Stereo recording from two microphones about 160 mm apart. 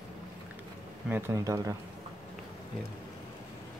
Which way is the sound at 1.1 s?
15° right (ahead or behind).